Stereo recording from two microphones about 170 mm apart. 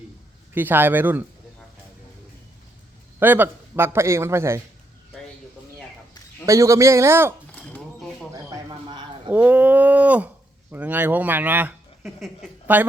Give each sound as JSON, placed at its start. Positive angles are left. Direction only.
{"t": 0.5, "sound": "a man's voice", "side_deg": -10}
{"t": 3.2, "sound": "a man's voice", "side_deg": -10}
{"t": 6.4, "sound": "a man's voice", "side_deg": -20}
{"t": 7.5, "sound": "a sound", "side_deg": 5}
{"t": 8.4, "sound": "a sound", "side_deg": -25}
{"t": 9.3, "sound": "a man's voice", "side_deg": -10}